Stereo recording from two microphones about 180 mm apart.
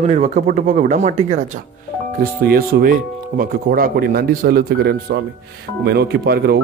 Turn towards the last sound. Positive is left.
turn(degrees=-65)  # may be behind; listen again after turning